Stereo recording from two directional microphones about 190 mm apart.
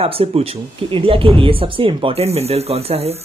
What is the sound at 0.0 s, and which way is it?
Speech, 30° right (ahead or behind).